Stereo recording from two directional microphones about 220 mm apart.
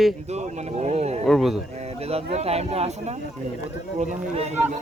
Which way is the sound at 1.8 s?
30° right (ahead or behind).